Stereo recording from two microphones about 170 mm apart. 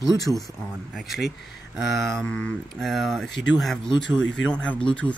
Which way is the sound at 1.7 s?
Centre (ahead or behind).